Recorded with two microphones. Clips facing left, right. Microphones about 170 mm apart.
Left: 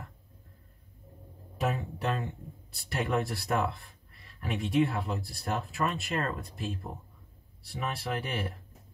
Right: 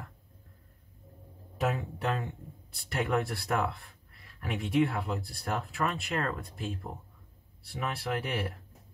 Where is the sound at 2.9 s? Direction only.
Centre (ahead or behind).